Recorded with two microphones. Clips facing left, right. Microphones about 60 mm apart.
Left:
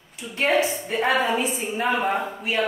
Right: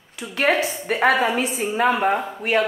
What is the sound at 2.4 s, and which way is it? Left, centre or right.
Speech, right.